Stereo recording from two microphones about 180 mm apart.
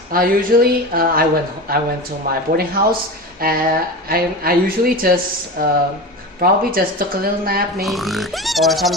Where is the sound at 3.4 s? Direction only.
55° right (ahead or behind).